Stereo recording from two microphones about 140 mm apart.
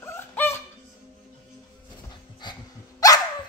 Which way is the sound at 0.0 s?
15° left (ahead or behind).